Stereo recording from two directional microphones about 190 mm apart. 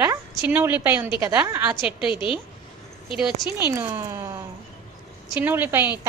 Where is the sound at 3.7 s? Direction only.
15° right (ahead or behind).